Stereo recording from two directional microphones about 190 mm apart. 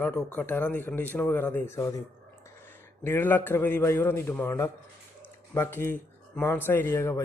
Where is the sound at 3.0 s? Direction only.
10° left (ahead or behind).